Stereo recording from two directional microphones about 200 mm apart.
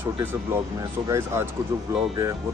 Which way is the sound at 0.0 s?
10° right (ahead or behind).